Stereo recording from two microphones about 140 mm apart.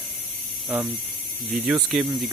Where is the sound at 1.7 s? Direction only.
10° right (ahead or behind).